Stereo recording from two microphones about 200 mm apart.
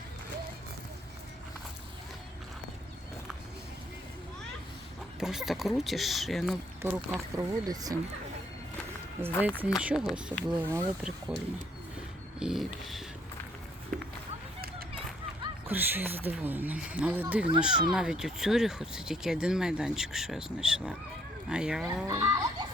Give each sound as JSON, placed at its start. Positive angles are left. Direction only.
{"t": 5.2, "sound": "speech", "side_deg": 0}
{"t": 9.2, "sound": "speech", "side_deg": -10}
{"t": 10.5, "sound": "speech", "side_deg": -15}
{"t": 11.3, "sound": "speech", "side_deg": -5}
{"t": 13.9, "sound": "a sound", "side_deg": 5}
{"t": 15.7, "sound": "speech", "side_deg": -10}
{"t": 22.0, "sound": "speech", "side_deg": -15}